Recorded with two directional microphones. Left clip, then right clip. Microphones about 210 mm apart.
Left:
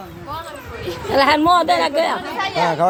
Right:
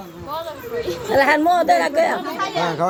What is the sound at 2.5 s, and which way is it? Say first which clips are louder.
Speech: left 4 dB; 25° left (ahead or behind).